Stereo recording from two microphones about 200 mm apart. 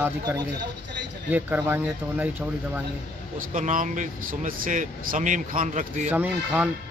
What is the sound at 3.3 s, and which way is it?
Speech, 40° right (ahead or behind).